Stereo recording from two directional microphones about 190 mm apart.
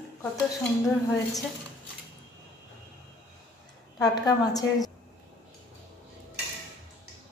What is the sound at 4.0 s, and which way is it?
Speech, 20° left (ahead or behind).